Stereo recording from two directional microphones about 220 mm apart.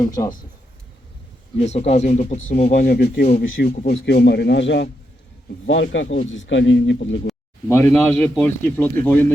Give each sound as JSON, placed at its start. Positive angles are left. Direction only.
{"t": 0.1, "sound": "a man's voice", "side_deg": 15}
{"t": 1.5, "sound": "speech", "side_deg": 30}
{"t": 3.8, "sound": "speech", "side_deg": 45}
{"t": 7.7, "sound": "a man's voice", "side_deg": 10}